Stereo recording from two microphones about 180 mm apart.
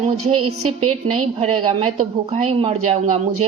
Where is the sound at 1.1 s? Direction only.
30° right (ahead or behind).